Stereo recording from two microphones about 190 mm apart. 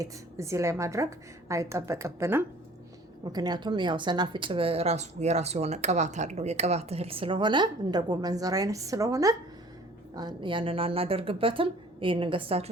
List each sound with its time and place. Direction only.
0.0 s a woman's voice: 15° right (ahead or behind)